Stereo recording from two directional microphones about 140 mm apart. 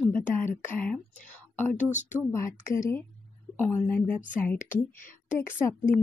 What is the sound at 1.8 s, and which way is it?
Speech, 60° left (ahead or behind).